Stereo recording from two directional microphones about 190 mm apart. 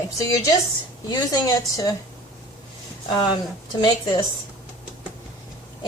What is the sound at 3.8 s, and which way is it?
Speech, 20° left (ahead or behind).